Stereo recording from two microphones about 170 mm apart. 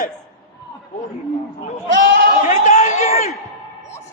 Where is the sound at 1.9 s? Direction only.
90° right.